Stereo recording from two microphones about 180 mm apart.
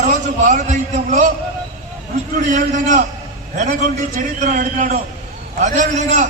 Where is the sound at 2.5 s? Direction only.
45° right (ahead or behind).